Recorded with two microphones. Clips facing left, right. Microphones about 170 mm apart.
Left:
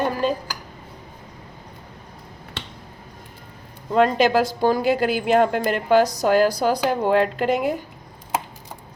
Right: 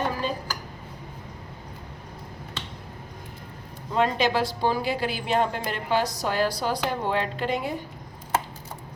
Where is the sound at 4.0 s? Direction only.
45° left (ahead or behind).